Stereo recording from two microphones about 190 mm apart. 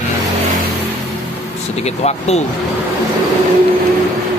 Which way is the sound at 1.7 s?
35° left (ahead or behind).